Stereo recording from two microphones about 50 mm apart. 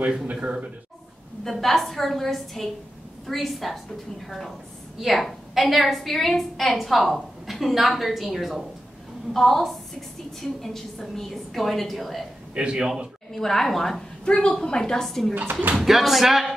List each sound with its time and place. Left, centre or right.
0.3 s speech: right
1.4 s a woman's voice: centre
5.0 s a woman's voice: centre
12.5 s speech: centre
13.3 s a woman's voice: centre
15.8 s a woman's voice: centre